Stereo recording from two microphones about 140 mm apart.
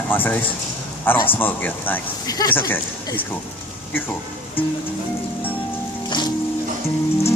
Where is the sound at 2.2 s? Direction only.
25° left (ahead or behind).